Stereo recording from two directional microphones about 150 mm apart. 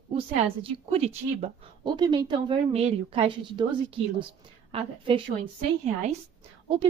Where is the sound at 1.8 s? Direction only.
30° right (ahead or behind).